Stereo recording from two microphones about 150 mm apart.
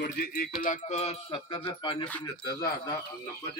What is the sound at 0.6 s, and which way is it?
Speech, 55° left (ahead or behind).